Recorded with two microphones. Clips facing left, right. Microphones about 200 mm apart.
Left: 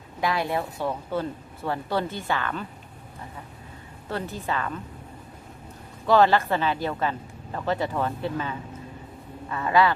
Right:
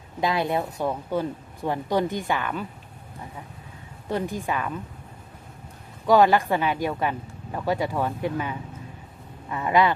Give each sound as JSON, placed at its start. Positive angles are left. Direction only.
{"t": 0.2, "sound": "speech", "side_deg": -20}
{"t": 4.1, "sound": "speech", "side_deg": -15}
{"t": 6.1, "sound": "speech", "side_deg": -15}